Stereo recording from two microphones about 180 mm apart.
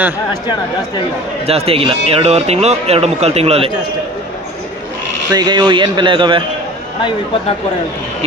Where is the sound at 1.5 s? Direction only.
35° right (ahead or behind).